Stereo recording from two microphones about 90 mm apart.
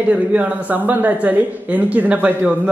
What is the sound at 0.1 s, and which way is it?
A woman's voice, 15° right (ahead or behind).